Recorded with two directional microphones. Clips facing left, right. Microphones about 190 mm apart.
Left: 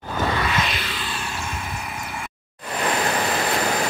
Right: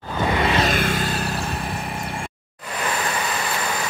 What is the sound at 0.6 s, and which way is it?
Music, 50° right (ahead or behind).